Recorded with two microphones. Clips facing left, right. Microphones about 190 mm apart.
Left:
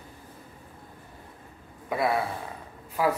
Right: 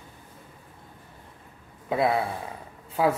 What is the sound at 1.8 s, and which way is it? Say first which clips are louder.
Speech: right 3 dB; 25° right (ahead or behind).